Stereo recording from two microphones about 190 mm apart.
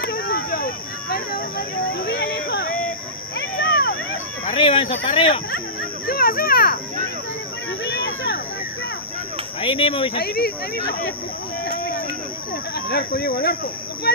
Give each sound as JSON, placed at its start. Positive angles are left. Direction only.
{"t": 0.0, "sound": "a sound", "side_deg": 55}
{"t": 4.5, "sound": "speech", "side_deg": 30}
{"t": 6.0, "sound": "speech", "side_deg": 50}
{"t": 7.8, "sound": "a sound", "side_deg": 60}
{"t": 9.6, "sound": "speech", "side_deg": 30}
{"t": 10.1, "sound": "speech", "side_deg": 55}
{"t": 12.7, "sound": "speech", "side_deg": 60}